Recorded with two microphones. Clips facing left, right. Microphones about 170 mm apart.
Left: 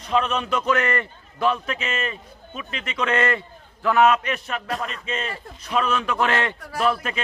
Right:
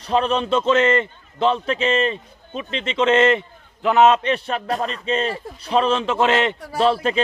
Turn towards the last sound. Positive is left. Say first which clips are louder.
# right 5 dB
turn(degrees=-30)  # may be behind; listen again after turning